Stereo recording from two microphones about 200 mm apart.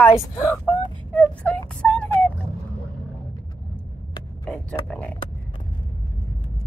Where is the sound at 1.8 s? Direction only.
5° left (ahead or behind).